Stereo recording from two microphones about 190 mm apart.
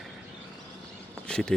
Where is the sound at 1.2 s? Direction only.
5° left (ahead or behind).